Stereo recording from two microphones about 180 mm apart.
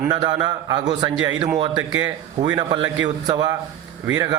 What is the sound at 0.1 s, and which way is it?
A man's voice, 25° right (ahead or behind).